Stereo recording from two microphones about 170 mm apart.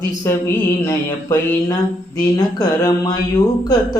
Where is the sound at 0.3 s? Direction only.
15° left (ahead or behind).